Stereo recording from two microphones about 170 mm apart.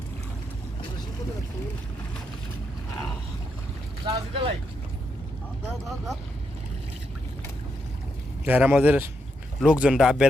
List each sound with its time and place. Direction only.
4.0 s speech: 30° right (ahead or behind)
8.4 s speech: 10° right (ahead or behind)